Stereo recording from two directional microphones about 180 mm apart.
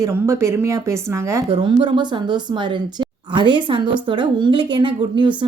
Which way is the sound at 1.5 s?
30° right (ahead or behind).